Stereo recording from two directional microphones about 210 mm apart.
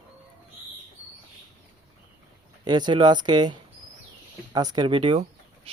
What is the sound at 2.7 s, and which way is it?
Speech, 20° right (ahead or behind).